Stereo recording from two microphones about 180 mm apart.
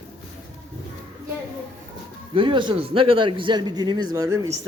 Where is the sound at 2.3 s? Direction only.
25° right (ahead or behind).